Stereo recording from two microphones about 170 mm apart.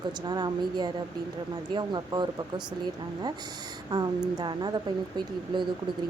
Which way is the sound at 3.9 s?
25° right (ahead or behind).